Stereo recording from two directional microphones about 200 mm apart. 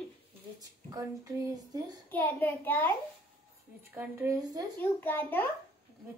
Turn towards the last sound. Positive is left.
turn(degrees=10)  # may be behind; listen again after turning